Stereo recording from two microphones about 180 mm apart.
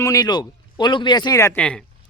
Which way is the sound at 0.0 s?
20° left (ahead or behind).